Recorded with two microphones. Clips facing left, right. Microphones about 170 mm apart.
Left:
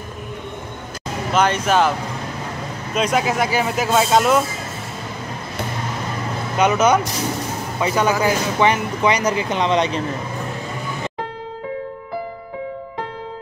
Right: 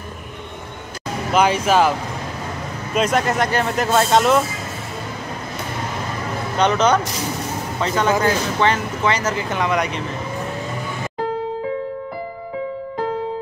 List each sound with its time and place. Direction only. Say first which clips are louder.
1.3 s speech: right 1 dB; 5° right (ahead or behind)
6.6 s speech: left 1 dB; 10° left (ahead or behind); by 9.9 s 25° left (ahead or behind)